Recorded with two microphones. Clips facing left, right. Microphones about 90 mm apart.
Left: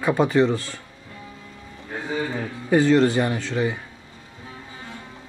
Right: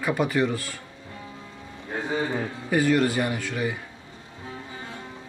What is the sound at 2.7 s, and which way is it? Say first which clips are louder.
Speech: left 5 dB; 25° left (ahead or behind).